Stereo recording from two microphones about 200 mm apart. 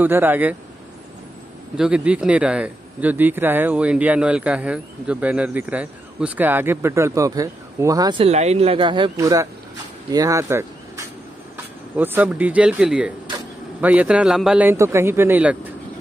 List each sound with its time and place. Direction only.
0.0 s speech: 10° right (ahead or behind)
1.8 s speech: 5° right (ahead or behind)